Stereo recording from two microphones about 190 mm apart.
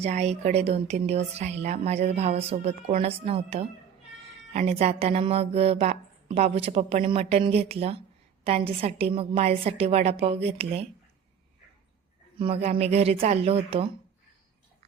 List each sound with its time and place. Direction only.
0.0 s a woman's voice: 35° right (ahead or behind)
12.4 s a woman's voice: 30° right (ahead or behind)